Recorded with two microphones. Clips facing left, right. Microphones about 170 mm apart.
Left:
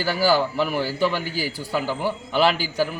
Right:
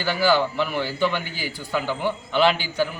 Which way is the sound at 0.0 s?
40° left (ahead or behind).